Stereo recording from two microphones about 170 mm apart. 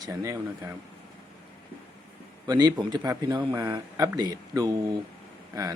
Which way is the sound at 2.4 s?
25° right (ahead or behind).